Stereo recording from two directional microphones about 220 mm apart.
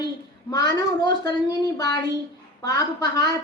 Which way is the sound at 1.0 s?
15° left (ahead or behind).